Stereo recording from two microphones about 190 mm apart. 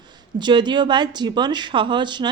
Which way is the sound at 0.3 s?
25° right (ahead or behind).